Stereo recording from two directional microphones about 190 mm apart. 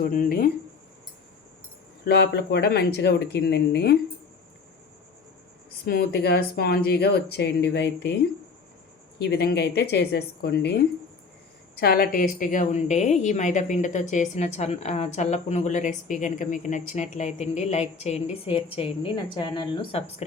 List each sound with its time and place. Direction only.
0.0 s speech: 50° left (ahead or behind)
2.0 s speech: 60° left (ahead or behind)
5.8 s speech: 55° left (ahead or behind)
9.1 s a woman's voice: 60° left (ahead or behind); by 20.2 s 30° left (ahead or behind)